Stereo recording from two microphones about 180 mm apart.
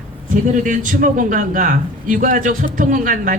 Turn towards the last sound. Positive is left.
turn(degrees=-45)  # may be behind; listen again after turning